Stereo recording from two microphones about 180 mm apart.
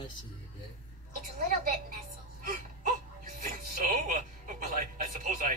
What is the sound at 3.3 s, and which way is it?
Music, 50° right (ahead or behind).